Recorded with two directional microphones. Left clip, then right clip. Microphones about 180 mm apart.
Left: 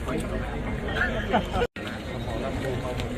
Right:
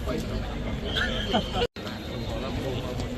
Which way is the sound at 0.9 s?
45° left (ahead or behind).